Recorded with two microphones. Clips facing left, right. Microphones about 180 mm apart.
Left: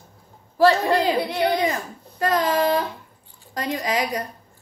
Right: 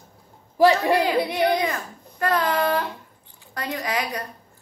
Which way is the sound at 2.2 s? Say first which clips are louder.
Left 2 dB; 20° left (ahead or behind).